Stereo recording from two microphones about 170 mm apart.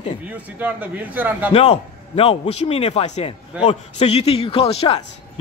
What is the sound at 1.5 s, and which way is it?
A man's voice, 35° left (ahead or behind).